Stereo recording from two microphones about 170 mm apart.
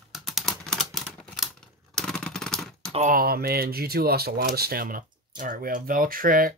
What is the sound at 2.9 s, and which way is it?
Speech, 50° right (ahead or behind).